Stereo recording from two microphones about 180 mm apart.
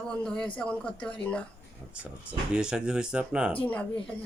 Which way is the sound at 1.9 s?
5° right (ahead or behind).